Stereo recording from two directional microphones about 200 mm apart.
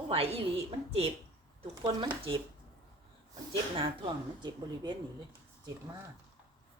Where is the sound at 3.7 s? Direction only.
25° right (ahead or behind).